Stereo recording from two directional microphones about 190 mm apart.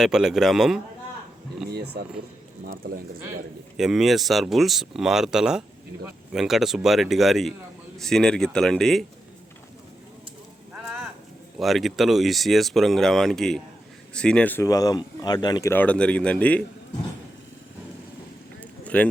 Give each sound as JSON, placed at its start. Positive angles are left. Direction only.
{"t": 0.0, "sound": "speech", "side_deg": 0}
{"t": 1.7, "sound": "speech", "side_deg": -60}
{"t": 3.8, "sound": "speech", "side_deg": 0}
{"t": 11.5, "sound": "speech", "side_deg": 0}
{"t": 15.7, "sound": "speech", "side_deg": 10}
{"t": 18.9, "sound": "speech", "side_deg": 10}